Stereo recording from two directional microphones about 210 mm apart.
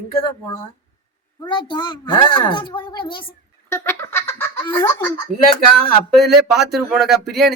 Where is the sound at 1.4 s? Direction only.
20° left (ahead or behind).